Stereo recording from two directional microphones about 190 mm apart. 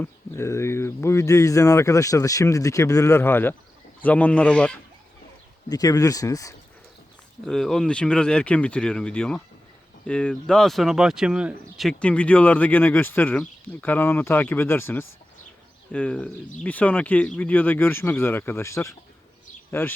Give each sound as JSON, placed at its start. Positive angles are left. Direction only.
{"t": 0.0, "sound": "speech", "side_deg": 15}
{"t": 5.6, "sound": "speech", "side_deg": 20}
{"t": 7.4, "sound": "speech", "side_deg": 5}